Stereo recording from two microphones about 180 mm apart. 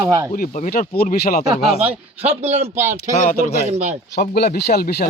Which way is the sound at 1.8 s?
35° right (ahead or behind).